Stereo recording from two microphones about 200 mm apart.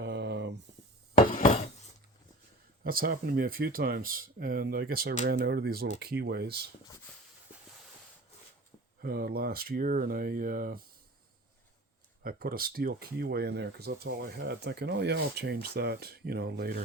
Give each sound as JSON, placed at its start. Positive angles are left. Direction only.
{"t": 0.0, "sound": "a sound", "side_deg": -60}
{"t": 1.1, "sound": "dishes", "side_deg": 45}
{"t": 2.8, "sound": "speech", "side_deg": -45}
{"t": 7.5, "sound": "a sound", "side_deg": -5}
{"t": 9.0, "sound": "speech", "side_deg": -50}
{"t": 12.2, "sound": "speech", "side_deg": -50}